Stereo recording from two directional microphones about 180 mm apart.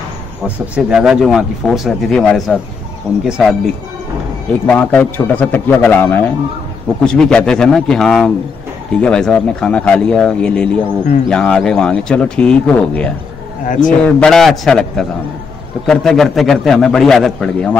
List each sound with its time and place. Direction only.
0.7 s speech: 5° right (ahead or behind)
4.6 s a man's voice: 10° left (ahead or behind)
13.7 s a man's voice: 45° left (ahead or behind)
14.0 s speech: 5° left (ahead or behind)